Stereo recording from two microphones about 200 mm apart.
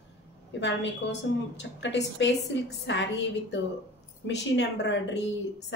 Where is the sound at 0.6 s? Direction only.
60° left (ahead or behind).